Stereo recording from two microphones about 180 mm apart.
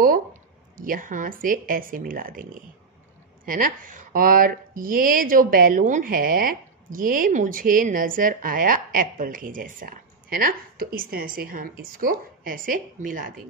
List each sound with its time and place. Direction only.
0.7 s speech: 50° right (ahead or behind)